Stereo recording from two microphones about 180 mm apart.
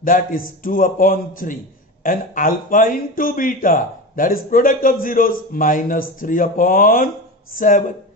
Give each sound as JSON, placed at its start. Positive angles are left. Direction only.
{"t": 0.0, "sound": "speech", "side_deg": 50}